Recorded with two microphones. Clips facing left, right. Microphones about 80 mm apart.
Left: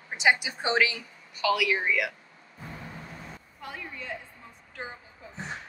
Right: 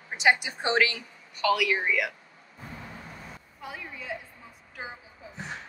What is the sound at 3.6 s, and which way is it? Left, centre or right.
A woman's voice, centre.